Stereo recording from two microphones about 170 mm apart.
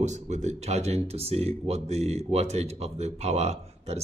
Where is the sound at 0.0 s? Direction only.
45° right (ahead or behind).